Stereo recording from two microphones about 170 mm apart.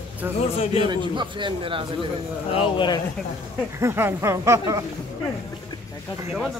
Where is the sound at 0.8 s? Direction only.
25° right (ahead or behind).